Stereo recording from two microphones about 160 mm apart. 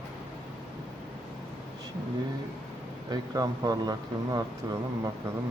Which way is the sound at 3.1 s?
25° right (ahead or behind).